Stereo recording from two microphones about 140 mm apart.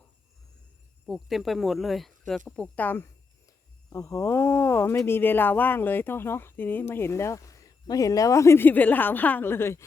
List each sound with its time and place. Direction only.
1.0 s speech: centre (ahead or behind)
2.6 s speech: 10° left (ahead or behind)
3.4 s speech: 25° left (ahead or behind)